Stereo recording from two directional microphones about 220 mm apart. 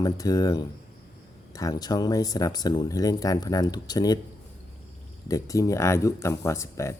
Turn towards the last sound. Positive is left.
turn(degrees=15)  # may be behind; listen again after turning